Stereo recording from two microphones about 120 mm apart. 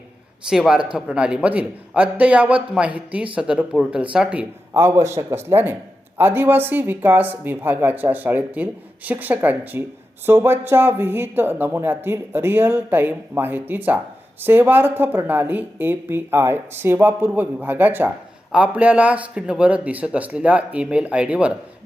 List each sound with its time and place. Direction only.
0.5 s speech: 5° right (ahead or behind)